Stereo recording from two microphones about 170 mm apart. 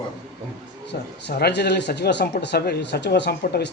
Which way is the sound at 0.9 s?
75° left (ahead or behind).